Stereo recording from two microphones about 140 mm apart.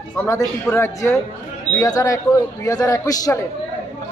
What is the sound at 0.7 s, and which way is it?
Speech, 20° left (ahead or behind).